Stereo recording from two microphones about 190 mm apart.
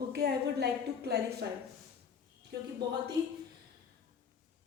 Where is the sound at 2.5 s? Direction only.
55° right (ahead or behind).